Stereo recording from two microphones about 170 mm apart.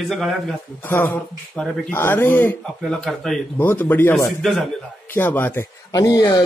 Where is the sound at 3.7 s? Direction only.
10° left (ahead or behind).